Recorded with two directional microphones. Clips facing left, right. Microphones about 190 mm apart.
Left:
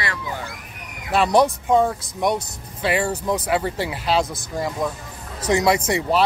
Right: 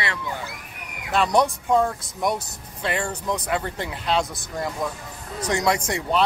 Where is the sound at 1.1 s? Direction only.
5° left (ahead or behind).